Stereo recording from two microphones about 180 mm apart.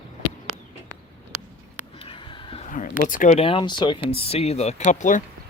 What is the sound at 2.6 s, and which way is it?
Speech, 45° left (ahead or behind).